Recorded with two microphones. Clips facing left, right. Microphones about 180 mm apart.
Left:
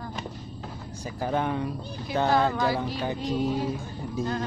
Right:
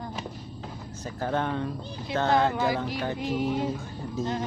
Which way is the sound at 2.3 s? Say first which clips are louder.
Right 1 dB; 15° right (ahead or behind).